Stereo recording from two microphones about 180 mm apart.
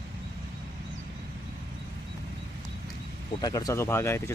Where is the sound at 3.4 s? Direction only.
20° left (ahead or behind).